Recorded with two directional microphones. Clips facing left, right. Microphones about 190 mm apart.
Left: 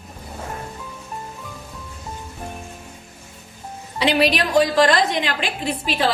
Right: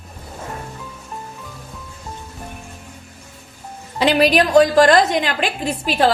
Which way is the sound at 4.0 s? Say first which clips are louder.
Right 4 dB; 45° right (ahead or behind).